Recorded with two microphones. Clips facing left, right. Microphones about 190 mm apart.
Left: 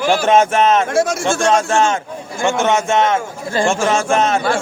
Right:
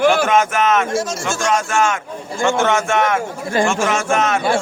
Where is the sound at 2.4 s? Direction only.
20° left (ahead or behind).